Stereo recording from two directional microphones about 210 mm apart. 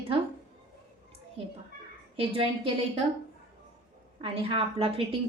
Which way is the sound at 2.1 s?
25° right (ahead or behind).